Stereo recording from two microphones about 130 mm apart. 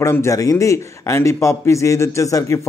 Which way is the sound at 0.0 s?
20° left (ahead or behind).